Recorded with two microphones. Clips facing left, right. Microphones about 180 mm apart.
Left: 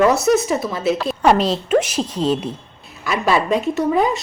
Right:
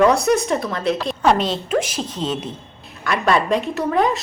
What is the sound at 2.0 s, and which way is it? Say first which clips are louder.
Speech: left 5 dB; 30° left (ahead or behind).